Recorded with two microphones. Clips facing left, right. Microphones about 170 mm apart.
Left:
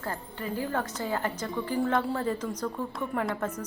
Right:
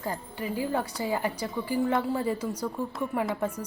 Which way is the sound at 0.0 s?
15° right (ahead or behind).